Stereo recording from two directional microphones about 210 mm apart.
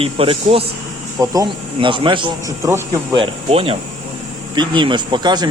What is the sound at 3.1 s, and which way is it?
Speech, 25° right (ahead or behind).